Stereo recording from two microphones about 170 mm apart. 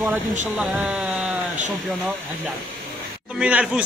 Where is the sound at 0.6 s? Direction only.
5° right (ahead or behind).